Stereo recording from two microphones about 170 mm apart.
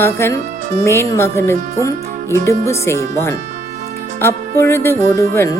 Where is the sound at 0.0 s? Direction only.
15° left (ahead or behind).